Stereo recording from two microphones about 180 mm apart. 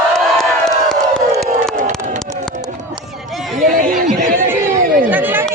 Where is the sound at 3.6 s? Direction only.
50° right (ahead or behind).